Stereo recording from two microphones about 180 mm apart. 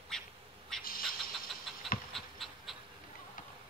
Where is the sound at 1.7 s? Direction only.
Centre (ahead or behind).